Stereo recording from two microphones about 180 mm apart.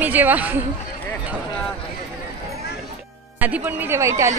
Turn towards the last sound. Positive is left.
turn(degrees=-15)  # may be behind; listen again after turning